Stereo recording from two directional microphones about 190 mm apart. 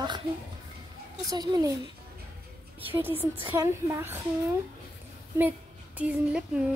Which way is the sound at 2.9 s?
10° right (ahead or behind).